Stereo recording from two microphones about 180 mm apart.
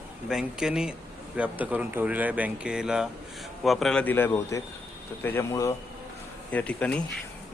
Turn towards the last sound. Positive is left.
turn(degrees=5)  # may be behind; listen again after turning